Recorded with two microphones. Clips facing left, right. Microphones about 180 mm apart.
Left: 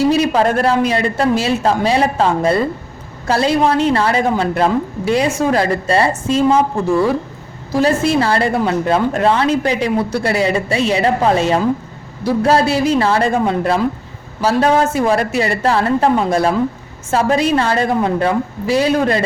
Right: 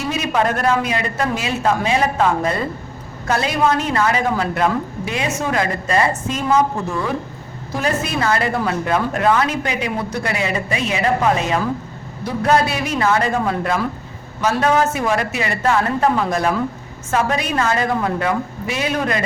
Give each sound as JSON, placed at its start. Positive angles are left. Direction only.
{"t": 0.0, "sound": "speech", "side_deg": 35}
{"t": 7.8, "sound": "speech", "side_deg": 30}